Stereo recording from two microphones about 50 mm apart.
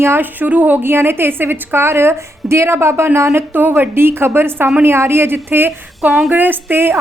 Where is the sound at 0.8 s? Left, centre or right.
Right.